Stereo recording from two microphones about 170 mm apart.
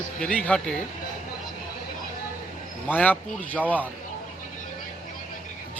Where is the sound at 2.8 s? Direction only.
10° left (ahead or behind).